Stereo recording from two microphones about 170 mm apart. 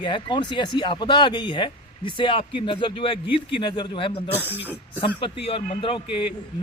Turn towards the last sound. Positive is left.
turn(degrees=30)  # may be behind; listen again after turning